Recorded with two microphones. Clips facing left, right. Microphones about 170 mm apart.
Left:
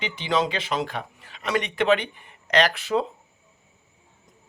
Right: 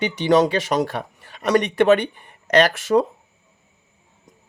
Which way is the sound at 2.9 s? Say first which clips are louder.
Right 8 dB; 45° right (ahead or behind).